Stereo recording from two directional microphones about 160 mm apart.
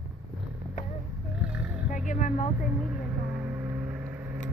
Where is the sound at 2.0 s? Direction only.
50° left (ahead or behind).